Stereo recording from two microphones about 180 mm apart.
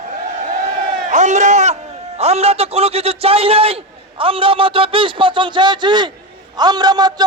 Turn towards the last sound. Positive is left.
turn(degrees=-20)  # may be behind; listen again after turning